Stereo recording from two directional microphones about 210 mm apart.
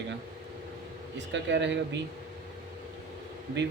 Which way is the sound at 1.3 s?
60° right (ahead or behind).